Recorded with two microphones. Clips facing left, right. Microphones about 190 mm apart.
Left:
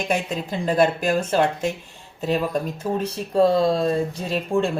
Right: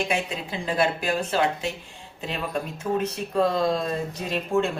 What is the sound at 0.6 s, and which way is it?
Speech, 45° left (ahead or behind).